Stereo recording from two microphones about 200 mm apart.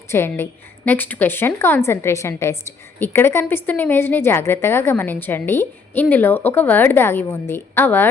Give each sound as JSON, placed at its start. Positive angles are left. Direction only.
{"t": 0.1, "sound": "a woman's voice", "side_deg": 10}